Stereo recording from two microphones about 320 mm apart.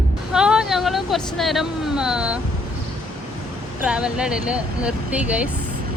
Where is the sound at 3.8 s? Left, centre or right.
Centre.